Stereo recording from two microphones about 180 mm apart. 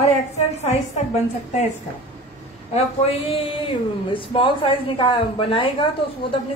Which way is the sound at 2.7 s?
35° left (ahead or behind).